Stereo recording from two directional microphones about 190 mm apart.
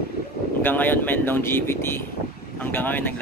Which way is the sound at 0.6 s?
10° left (ahead or behind).